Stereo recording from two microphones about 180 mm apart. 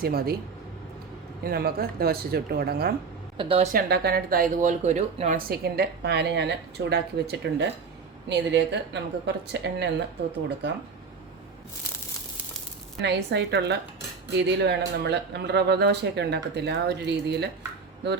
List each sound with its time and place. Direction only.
0.0 s speech: 60° right (ahead or behind)
1.5 s speech: 55° right (ahead or behind)
3.3 s speech: 30° right (ahead or behind)
3.7 s speech: 55° right (ahead or behind); by 5.4 s 40° right (ahead or behind)
5.4 s speech: 60° right (ahead or behind)
13.0 s speech: 70° right (ahead or behind)